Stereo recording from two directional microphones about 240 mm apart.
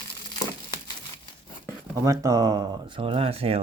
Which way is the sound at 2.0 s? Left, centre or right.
Centre.